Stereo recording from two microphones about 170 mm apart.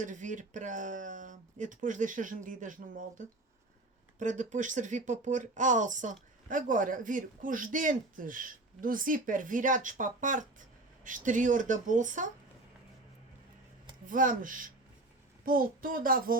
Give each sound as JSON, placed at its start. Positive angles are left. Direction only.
{"t": 0.0, "sound": "speech", "side_deg": -50}
{"t": 14.1, "sound": "speech", "side_deg": -50}